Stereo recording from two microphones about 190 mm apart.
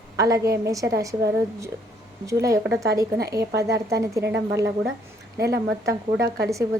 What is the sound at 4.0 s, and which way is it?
Speech, 15° right (ahead or behind).